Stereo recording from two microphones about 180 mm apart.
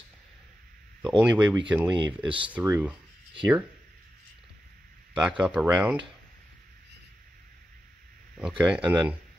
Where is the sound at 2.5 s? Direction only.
10° right (ahead or behind).